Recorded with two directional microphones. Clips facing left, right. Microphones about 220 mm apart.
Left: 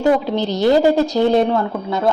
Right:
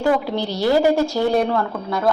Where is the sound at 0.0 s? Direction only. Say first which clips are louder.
Left 3 dB; 20° left (ahead or behind).